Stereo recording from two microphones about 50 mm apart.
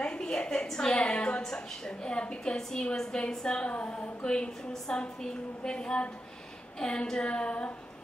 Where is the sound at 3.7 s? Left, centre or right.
Left.